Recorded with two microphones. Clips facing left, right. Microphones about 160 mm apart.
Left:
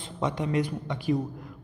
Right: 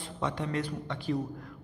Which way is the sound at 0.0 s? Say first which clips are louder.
Left 4 dB; 15° left (ahead or behind).